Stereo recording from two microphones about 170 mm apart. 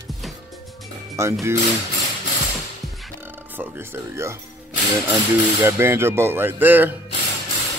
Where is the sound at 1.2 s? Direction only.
15° right (ahead or behind).